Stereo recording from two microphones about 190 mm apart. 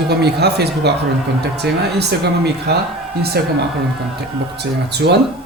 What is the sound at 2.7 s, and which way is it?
Speech, 60° right (ahead or behind).